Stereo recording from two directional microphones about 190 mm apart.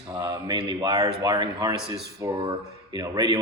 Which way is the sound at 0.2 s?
20° right (ahead or behind).